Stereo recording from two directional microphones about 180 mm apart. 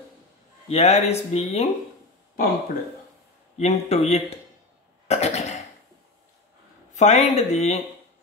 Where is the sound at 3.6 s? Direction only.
35° left (ahead or behind).